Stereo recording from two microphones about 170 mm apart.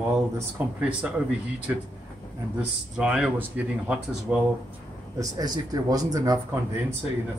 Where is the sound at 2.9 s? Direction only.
5° right (ahead or behind).